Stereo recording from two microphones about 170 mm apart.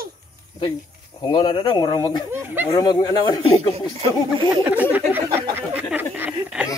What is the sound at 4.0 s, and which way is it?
Speech, 30° right (ahead or behind).